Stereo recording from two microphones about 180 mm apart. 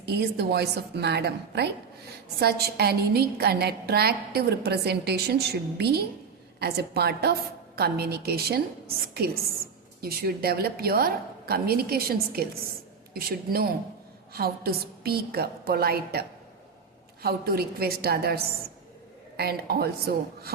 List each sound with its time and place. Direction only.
0.1 s a woman's voice: 65° right (ahead or behind)
17.2 s a woman's voice: 60° right (ahead or behind)